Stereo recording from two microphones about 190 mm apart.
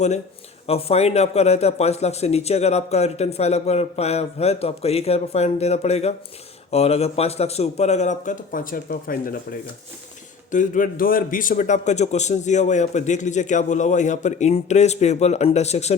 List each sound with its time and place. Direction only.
0.7 s a man's voice: 30° left (ahead or behind)